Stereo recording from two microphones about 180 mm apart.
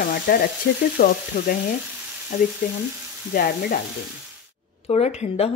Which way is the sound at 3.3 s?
55° left (ahead or behind).